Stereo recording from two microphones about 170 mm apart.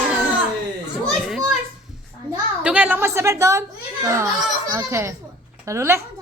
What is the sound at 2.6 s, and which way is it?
A woman's voice, 10° right (ahead or behind).